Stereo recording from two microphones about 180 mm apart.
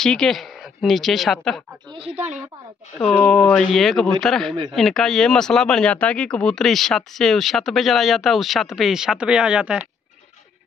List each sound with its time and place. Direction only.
0.0 s a woman's voice: centre (ahead or behind)
1.9 s speech: 30° right (ahead or behind)
3.0 s speech: 5° left (ahead or behind)